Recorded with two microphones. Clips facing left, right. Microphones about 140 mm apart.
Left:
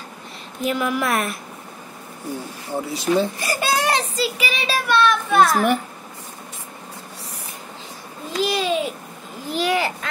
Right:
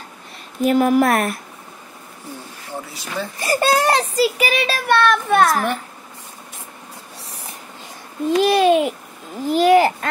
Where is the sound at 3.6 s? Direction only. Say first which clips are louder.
Right 4 dB; 40° right (ahead or behind).